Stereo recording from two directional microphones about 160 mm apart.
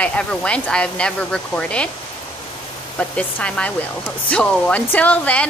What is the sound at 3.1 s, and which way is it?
Speech, 5° left (ahead or behind).